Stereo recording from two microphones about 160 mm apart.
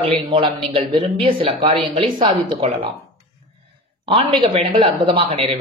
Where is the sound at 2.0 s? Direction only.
35° right (ahead or behind).